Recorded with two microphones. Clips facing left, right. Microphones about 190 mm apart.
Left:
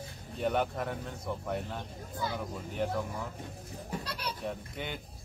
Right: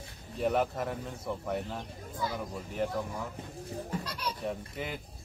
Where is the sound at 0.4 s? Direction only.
Centre (ahead or behind).